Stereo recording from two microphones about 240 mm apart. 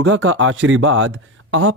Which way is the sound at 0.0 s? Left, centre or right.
Right.